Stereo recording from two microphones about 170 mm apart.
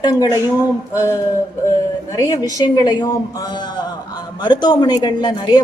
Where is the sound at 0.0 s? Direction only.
20° left (ahead or behind).